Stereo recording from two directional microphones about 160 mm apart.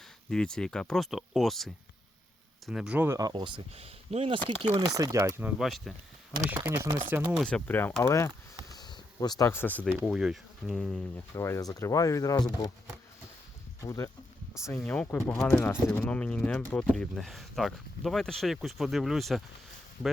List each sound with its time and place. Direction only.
0.3 s speech: 5° left (ahead or behind)
3.2 s speech: 25° right (ahead or behind); by 5.9 s centre (ahead or behind)
6.5 s speech: 15° right (ahead or behind)
7.3 s speech: 5° left (ahead or behind)
8.7 s a sound: 25° left (ahead or behind)
9.5 s speech: 10° left (ahead or behind)
9.9 s speech: centre (ahead or behind)
11.3 s speech: 15° left (ahead or behind)
13.8 s speech: 20° left (ahead or behind); by 19.4 s centre (ahead or behind)